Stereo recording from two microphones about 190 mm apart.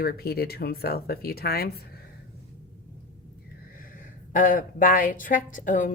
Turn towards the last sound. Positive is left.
turn(degrees=45)  # may be behind; listen again after turning